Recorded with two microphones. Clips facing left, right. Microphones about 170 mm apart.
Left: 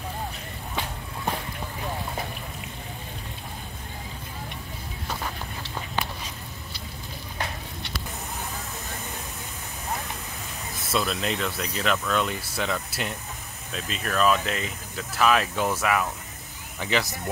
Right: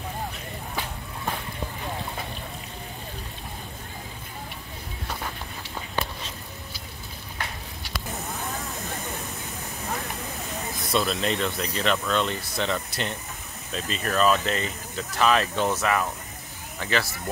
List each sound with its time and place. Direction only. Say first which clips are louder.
10.9 s speech: right 2 dB; 5° left (ahead or behind)